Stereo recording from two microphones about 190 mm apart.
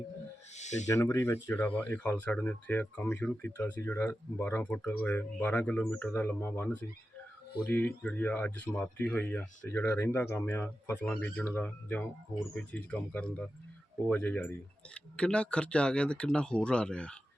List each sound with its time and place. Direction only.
0.5 s owl: 40° left (ahead or behind)
0.9 s speech: 15° left (ahead or behind)